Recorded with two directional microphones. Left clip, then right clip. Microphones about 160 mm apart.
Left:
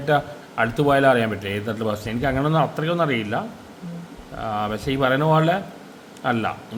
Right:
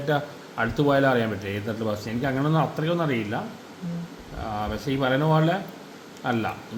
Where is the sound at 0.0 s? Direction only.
15° left (ahead or behind).